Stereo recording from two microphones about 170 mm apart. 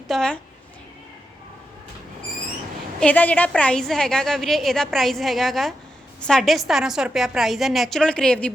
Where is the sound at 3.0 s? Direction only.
10° left (ahead or behind).